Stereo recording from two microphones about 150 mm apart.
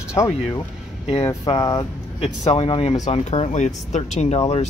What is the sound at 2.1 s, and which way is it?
Speech, 40° left (ahead or behind).